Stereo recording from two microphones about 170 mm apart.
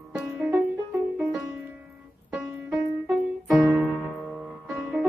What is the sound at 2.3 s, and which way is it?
Music, 10° right (ahead or behind).